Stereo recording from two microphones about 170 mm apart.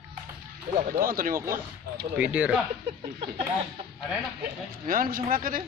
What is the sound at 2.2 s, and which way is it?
Speech, 10° right (ahead or behind).